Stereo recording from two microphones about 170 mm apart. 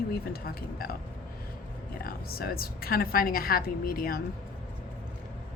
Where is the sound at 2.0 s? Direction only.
60° left (ahead or behind).